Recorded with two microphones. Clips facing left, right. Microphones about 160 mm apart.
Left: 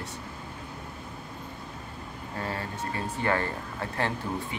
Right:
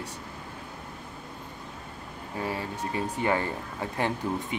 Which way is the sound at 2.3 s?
15° right (ahead or behind).